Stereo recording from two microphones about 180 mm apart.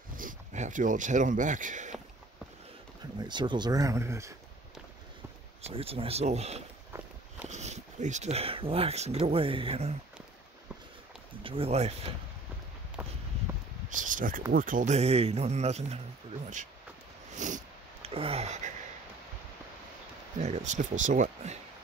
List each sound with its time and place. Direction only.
0.1 s speech: 50° right (ahead or behind)
3.2 s speech: 25° right (ahead or behind)
5.7 s speech: 35° right (ahead or behind)
11.4 s speech: 30° right (ahead or behind)
13.0 s a sound: 10° right (ahead or behind)
13.8 s a sound: 45° right (ahead or behind)
14.5 s speech: 50° right (ahead or behind)
17.3 s a sound: 40° right (ahead or behind)
20.3 s speech: 40° right (ahead or behind)